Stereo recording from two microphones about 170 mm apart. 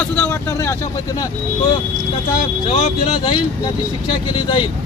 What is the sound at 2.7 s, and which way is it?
Speech, 35° left (ahead or behind).